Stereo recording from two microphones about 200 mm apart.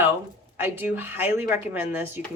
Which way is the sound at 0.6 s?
10° right (ahead or behind).